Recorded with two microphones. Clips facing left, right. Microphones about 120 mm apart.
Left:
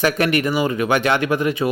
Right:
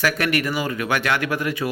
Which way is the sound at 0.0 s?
20° left (ahead or behind).